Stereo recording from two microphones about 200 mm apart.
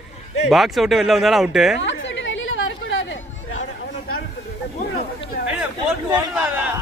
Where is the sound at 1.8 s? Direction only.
65° left (ahead or behind).